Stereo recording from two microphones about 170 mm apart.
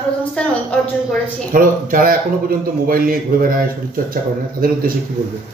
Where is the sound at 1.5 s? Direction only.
55° right (ahead or behind).